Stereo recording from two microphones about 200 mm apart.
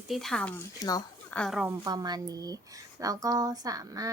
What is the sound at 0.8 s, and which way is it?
Speech, 20° left (ahead or behind).